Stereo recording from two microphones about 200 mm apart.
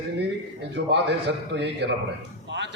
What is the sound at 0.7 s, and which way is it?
A man's voice, 60° right (ahead or behind).